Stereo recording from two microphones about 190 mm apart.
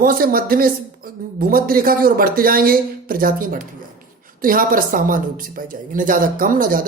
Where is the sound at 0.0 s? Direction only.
50° right (ahead or behind).